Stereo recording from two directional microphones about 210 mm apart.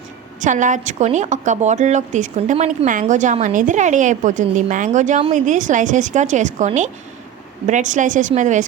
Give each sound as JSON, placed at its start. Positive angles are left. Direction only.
{"t": 0.3, "sound": "a woman's voice", "side_deg": -35}